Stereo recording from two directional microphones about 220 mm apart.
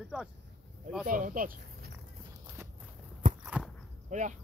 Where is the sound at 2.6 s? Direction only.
10° right (ahead or behind).